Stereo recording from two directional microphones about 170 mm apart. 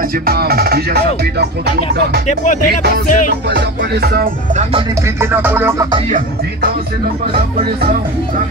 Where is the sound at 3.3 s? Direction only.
75° right (ahead or behind).